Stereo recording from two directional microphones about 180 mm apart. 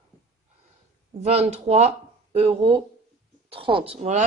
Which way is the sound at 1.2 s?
35° right (ahead or behind).